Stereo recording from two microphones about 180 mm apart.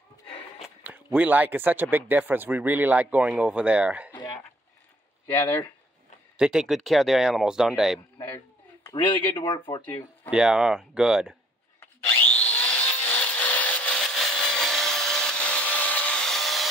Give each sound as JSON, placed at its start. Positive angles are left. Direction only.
{"t": 0.6, "sound": "speech", "side_deg": -10}
{"t": 4.1, "sound": "a sound", "side_deg": 25}
{"t": 6.3, "sound": "speech", "side_deg": -5}
{"t": 8.9, "sound": "speech", "side_deg": 25}
{"t": 10.3, "sound": "speech", "side_deg": -5}
{"t": 11.8, "sound": "wood", "side_deg": 10}